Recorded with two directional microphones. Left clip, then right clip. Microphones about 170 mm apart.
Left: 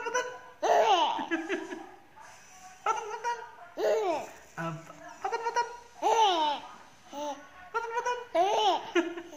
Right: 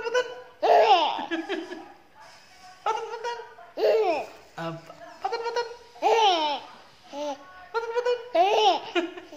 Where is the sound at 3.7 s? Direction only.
20° right (ahead or behind).